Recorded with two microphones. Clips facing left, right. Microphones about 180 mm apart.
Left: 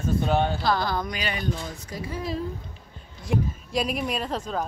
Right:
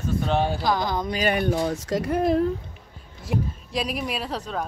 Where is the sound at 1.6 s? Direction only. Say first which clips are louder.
Right 10 dB; 85° right; by 2.5 s 60° right (ahead or behind).